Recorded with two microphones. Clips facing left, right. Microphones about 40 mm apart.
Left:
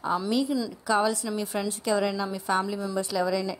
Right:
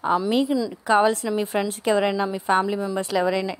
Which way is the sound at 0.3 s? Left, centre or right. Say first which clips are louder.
Right 5 dB; right.